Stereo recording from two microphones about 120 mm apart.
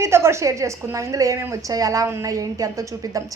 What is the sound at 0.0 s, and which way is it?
A woman's voice, 20° right (ahead or behind).